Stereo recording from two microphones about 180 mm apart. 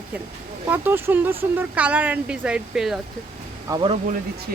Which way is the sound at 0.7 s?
10° right (ahead or behind).